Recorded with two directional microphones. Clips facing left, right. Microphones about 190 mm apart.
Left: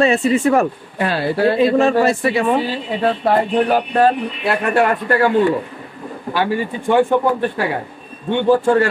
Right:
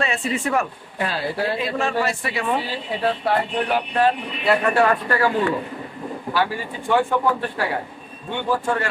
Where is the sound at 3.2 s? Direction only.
45° left (ahead or behind).